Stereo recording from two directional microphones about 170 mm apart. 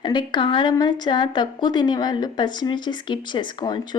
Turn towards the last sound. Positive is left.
turn(degrees=25)  # may be behind; listen again after turning